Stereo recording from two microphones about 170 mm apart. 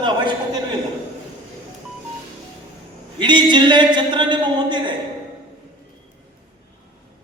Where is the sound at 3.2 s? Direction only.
25° right (ahead or behind).